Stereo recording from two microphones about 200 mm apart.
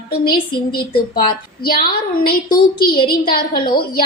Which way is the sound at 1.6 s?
50° left (ahead or behind).